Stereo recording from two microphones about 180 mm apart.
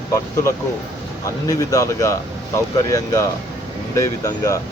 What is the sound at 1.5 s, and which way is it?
Speech, 20° left (ahead or behind).